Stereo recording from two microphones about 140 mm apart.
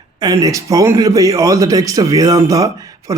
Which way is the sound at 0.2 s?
25° right (ahead or behind).